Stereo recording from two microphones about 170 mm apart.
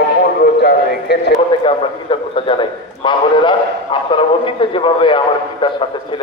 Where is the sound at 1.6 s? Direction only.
30° left (ahead or behind).